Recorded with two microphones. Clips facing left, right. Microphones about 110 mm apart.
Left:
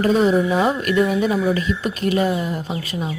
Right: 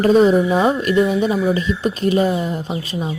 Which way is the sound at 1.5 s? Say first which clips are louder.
Right 2 dB; 25° right (ahead or behind).